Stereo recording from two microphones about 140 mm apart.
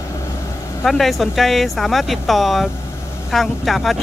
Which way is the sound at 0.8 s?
Centre (ahead or behind).